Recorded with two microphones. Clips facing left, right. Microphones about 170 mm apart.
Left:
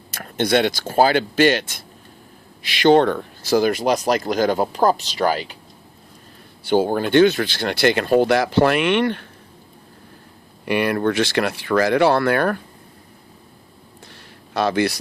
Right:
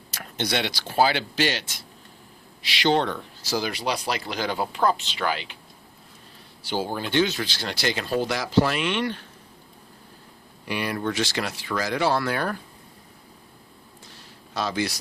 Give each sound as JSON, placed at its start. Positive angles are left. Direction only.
{"t": 0.1, "sound": "speech", "side_deg": 50}
{"t": 6.6, "sound": "speech", "side_deg": 55}
{"t": 10.7, "sound": "speech", "side_deg": 60}
{"t": 14.1, "sound": "a sound", "side_deg": 60}